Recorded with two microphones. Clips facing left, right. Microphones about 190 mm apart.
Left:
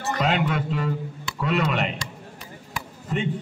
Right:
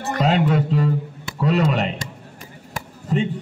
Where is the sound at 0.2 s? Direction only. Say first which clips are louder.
Right 6 dB; 35° right (ahead or behind).